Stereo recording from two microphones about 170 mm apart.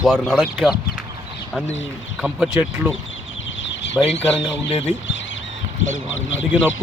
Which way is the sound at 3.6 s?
90° left.